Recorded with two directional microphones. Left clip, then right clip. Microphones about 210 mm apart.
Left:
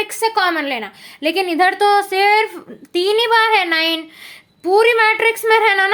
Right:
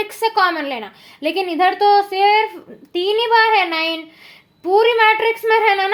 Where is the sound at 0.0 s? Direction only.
10° left (ahead or behind).